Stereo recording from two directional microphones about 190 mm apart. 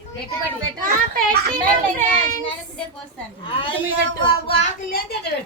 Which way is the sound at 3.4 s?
25° left (ahead or behind).